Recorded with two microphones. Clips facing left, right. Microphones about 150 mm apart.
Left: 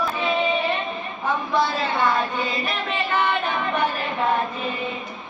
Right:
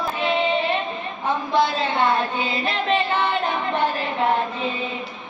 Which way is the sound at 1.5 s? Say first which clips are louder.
Right 3 dB; 25° right (ahead or behind).